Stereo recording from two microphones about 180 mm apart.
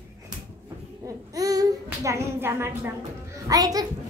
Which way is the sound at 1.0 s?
20° right (ahead or behind).